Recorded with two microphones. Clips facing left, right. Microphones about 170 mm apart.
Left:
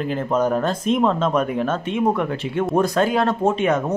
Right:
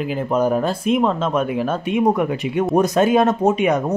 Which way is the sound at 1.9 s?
15° right (ahead or behind).